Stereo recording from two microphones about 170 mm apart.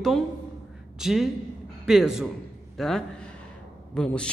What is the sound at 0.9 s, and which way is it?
A woman's voice, centre (ahead or behind).